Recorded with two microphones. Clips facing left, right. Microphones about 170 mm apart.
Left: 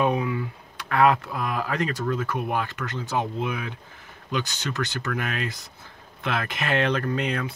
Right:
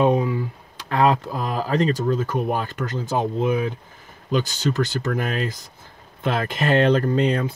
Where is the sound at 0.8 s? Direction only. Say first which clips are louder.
Right 1 dB; 30° right (ahead or behind).